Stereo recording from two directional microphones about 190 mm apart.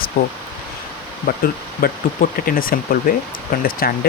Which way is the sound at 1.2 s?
50° left (ahead or behind).